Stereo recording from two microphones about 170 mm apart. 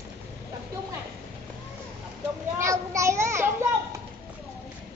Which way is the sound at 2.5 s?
15° right (ahead or behind).